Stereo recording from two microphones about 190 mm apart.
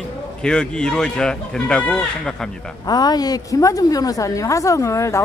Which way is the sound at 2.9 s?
20° left (ahead or behind).